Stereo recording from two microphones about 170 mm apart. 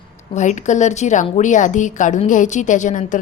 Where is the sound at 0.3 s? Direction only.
45° left (ahead or behind).